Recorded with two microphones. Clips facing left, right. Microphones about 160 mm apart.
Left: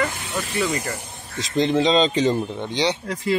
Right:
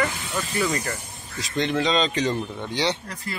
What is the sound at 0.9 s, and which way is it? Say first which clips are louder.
Speech: left 1 dB; 25° left (ahead or behind).